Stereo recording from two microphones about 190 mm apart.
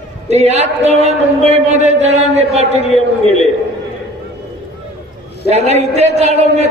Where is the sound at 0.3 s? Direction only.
35° right (ahead or behind).